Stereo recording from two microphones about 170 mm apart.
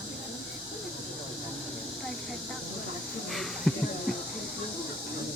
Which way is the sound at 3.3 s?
Centre (ahead or behind).